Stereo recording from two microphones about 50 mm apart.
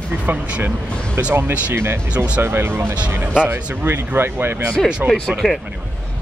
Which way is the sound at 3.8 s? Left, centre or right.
Right.